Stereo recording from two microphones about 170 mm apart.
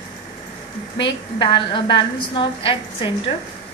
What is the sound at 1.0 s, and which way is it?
A woman's voice, 30° left (ahead or behind).